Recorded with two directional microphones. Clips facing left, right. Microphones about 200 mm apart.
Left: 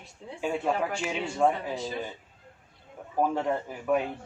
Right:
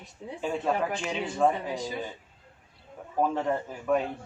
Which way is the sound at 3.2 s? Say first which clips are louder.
Even; 10° left (ahead or behind).